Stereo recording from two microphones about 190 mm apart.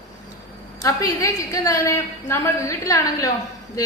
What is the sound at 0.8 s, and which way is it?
A woman's voice, 15° left (ahead or behind).